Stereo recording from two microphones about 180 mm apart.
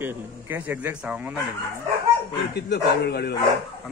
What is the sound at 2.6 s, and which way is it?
Speech, 65° left (ahead or behind).